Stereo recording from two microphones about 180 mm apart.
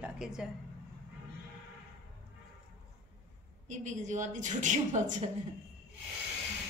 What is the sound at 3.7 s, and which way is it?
A woman's voice, 45° right (ahead or behind).